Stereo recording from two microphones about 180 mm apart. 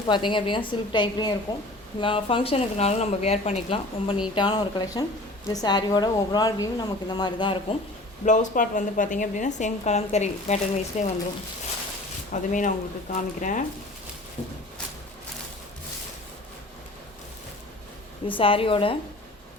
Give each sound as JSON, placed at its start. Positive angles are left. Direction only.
{"t": 0.1, "sound": "a woman's voice", "side_deg": 25}
{"t": 8.2, "sound": "a woman's voice", "side_deg": 45}
{"t": 12.3, "sound": "a woman's voice", "side_deg": 45}
{"t": 18.3, "sound": "a woman's voice", "side_deg": 30}